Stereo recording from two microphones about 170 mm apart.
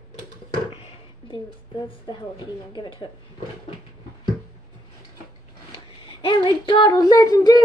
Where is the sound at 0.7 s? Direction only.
35° left (ahead or behind).